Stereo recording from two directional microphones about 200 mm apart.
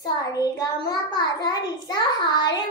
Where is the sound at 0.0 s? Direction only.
20° left (ahead or behind).